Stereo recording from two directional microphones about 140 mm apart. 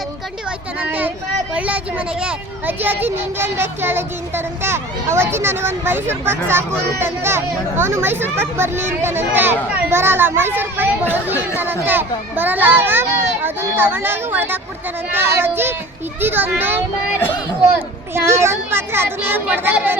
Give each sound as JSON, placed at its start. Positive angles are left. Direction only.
{"t": 0.8, "sound": "speech", "side_deg": -10}